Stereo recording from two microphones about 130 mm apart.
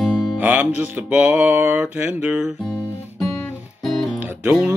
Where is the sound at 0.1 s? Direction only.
15° right (ahead or behind).